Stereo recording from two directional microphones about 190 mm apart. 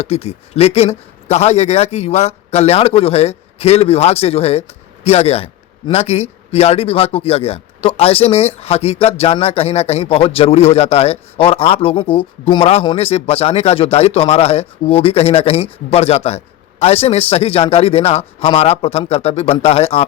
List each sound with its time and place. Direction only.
0.0 s a man's voice: 35° left (ahead or behind)